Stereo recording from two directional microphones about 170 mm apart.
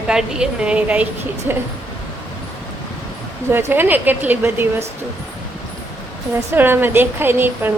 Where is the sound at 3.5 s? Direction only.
15° right (ahead or behind).